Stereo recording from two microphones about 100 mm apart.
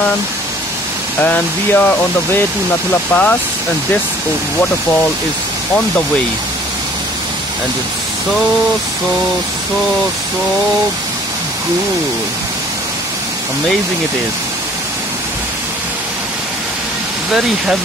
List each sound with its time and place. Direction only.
1.2 s speech: 15° left (ahead or behind)
17.3 s speech: 5° right (ahead or behind)